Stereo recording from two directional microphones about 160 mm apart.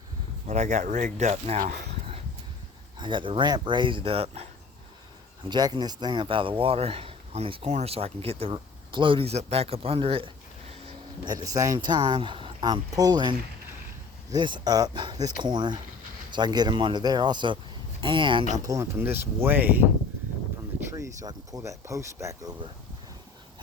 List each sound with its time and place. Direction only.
0.4 s speech: 45° right (ahead or behind)
1.9 s a sound: 35° right (ahead or behind)
3.0 s speech: 30° right (ahead or behind)
5.5 s speech: 25° right (ahead or behind)
11.3 s speech: 25° right (ahead or behind)